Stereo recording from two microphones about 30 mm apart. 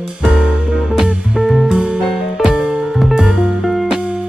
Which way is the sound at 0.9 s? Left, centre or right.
Centre.